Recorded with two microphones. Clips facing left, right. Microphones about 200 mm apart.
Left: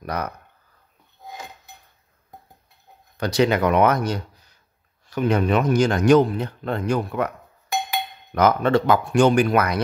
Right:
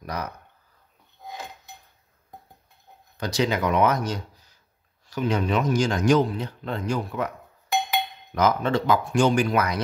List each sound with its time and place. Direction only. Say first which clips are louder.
0.0 s speech: left 4 dB; 60° left (ahead or behind)
3.2 s speech: left 5 dB; 60° left (ahead or behind)
8.4 s speech: left 4 dB; 60° left (ahead or behind)